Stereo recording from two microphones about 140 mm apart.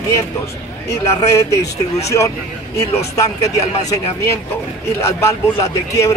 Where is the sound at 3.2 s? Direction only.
20° left (ahead or behind).